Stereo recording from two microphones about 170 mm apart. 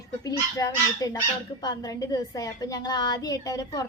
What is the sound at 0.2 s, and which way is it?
A woman's voice, 20° left (ahead or behind).